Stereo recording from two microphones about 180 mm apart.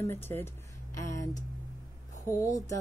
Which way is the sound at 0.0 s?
10° left (ahead or behind).